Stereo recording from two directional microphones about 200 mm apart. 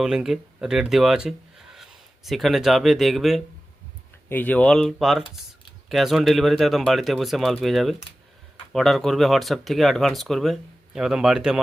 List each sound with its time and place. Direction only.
0.0 s speech: centre (ahead or behind)